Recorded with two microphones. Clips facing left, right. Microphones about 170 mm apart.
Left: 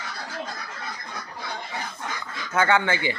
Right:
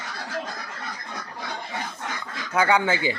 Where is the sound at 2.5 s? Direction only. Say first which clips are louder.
Right 1 dB; 15° right (ahead or behind).